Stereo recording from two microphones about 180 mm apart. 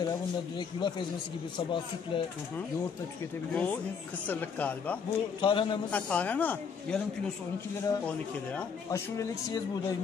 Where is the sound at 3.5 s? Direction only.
10° left (ahead or behind).